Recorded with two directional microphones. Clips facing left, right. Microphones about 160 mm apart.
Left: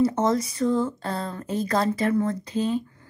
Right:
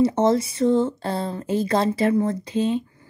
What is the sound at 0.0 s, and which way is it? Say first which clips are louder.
Speech: right 3 dB; 30° right (ahead or behind).